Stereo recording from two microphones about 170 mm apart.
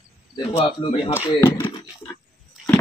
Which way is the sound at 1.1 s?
15° left (ahead or behind).